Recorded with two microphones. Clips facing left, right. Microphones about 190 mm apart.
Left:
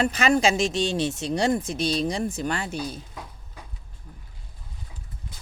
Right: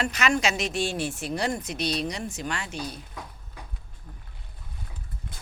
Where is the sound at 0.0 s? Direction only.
35° left (ahead or behind).